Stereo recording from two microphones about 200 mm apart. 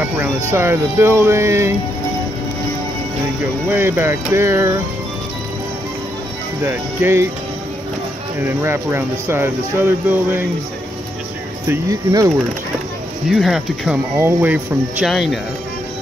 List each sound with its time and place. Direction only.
0.0 s speech: 10° right (ahead or behind)
3.6 s speech: 10° right (ahead or behind)
6.6 s speech: 10° right (ahead or behind)
8.4 s speech: 10° right (ahead or behind)
11.7 s speech: 20° right (ahead or behind)
13.3 s speech: centre (ahead or behind)